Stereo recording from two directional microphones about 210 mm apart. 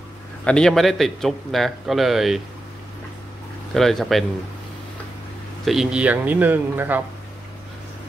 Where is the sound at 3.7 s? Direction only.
Centre (ahead or behind).